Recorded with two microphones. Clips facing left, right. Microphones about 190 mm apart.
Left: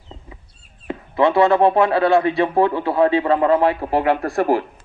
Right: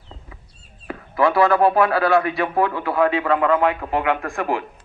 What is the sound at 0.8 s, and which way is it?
Speech, 25° left (ahead or behind).